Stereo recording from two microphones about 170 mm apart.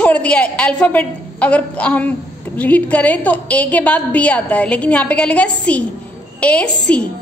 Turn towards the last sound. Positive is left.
turn(degrees=5)  # may be behind; listen again after turning